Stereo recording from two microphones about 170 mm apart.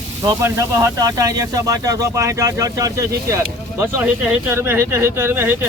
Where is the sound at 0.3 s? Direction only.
15° right (ahead or behind).